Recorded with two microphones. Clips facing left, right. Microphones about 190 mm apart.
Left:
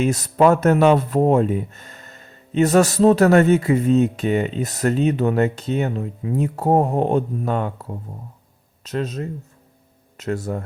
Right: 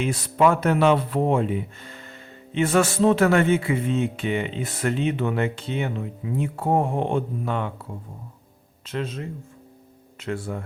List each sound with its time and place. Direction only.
0.0 s speech: 45° left (ahead or behind)